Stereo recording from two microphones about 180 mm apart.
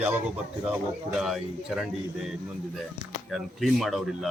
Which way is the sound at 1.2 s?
5° right (ahead or behind).